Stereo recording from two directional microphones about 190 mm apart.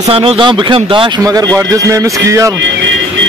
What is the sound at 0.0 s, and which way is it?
Speech, 30° right (ahead or behind).